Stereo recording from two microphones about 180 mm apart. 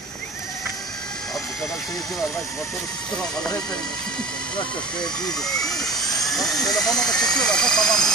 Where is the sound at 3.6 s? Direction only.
5° left (ahead or behind).